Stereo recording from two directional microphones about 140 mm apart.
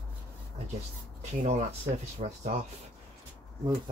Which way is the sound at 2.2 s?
55° right (ahead or behind).